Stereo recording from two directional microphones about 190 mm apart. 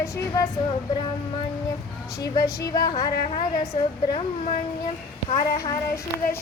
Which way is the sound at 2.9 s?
35° left (ahead or behind).